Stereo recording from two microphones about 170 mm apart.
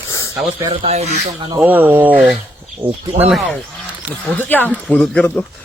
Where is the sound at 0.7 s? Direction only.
35° right (ahead or behind).